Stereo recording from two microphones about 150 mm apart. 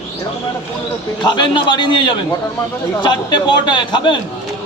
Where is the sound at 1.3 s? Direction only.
30° left (ahead or behind).